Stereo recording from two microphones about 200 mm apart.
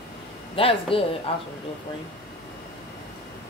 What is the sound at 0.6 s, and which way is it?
Speech, 30° left (ahead or behind).